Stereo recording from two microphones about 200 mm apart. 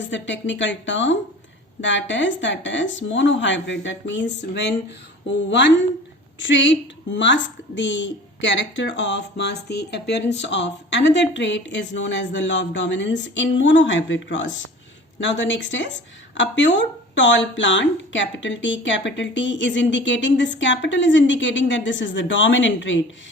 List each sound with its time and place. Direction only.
0.0 s a woman's voice: 65° left (ahead or behind)